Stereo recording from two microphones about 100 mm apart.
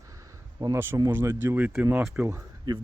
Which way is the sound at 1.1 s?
20° right (ahead or behind).